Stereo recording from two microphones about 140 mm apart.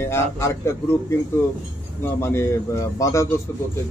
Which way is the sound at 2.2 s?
20° left (ahead or behind).